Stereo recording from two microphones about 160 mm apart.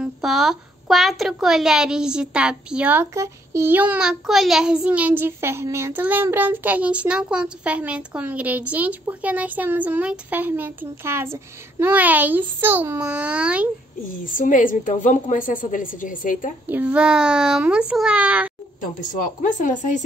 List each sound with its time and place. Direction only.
0.0 s a woman's voice: centre (ahead or behind)
14.2 s a woman's voice: 55° left (ahead or behind)
16.6 s a woman's voice: 10° right (ahead or behind)
18.8 s a woman's voice: 55° left (ahead or behind)